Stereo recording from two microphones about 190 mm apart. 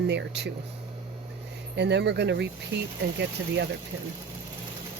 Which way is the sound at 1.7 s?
65° right (ahead or behind).